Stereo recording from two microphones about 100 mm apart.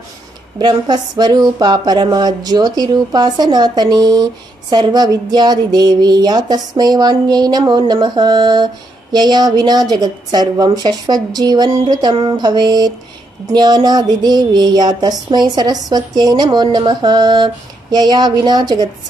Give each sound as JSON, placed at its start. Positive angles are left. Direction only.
{"t": 0.6, "sound": "speech", "side_deg": -50}